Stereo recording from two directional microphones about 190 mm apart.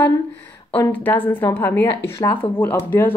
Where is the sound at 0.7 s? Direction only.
10° left (ahead or behind).